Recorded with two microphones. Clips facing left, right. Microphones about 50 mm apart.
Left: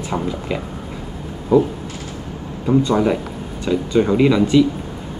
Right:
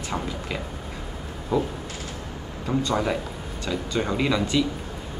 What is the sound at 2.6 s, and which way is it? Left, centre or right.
Speech, centre.